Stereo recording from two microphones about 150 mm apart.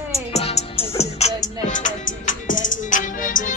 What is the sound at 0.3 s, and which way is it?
Music, 45° left (ahead or behind).